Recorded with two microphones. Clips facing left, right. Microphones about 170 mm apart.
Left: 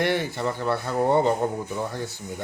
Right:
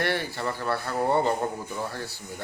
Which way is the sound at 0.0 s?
20° left (ahead or behind).